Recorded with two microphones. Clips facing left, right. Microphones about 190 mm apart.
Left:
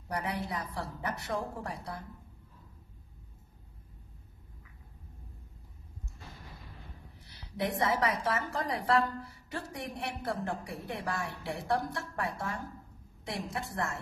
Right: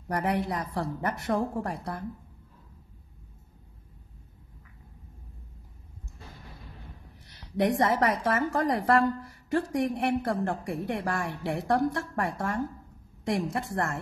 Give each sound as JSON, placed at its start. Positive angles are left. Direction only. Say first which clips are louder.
{"t": 0.1, "sound": "a woman's voice", "louder": "right 7 dB", "side_deg": -55}
{"t": 7.2, "sound": "a woman's voice", "louder": "right 8 dB", "side_deg": -55}